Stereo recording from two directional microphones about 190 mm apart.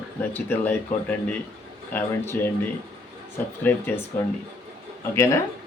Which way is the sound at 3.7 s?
10° left (ahead or behind).